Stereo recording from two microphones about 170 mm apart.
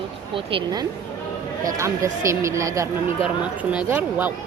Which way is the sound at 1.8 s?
15° right (ahead or behind).